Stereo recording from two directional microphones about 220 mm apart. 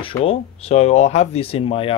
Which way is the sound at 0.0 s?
25° left (ahead or behind).